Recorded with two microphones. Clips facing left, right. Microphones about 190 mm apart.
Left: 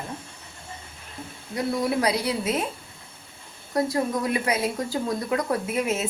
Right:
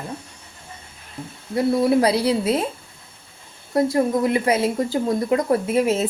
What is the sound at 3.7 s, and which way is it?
A woman's voice, 25° right (ahead or behind).